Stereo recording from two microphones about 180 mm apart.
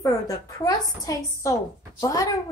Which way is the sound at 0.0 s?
20° left (ahead or behind).